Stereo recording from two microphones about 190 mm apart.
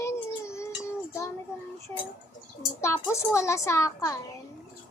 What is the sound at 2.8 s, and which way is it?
A child's voice, 15° left (ahead or behind).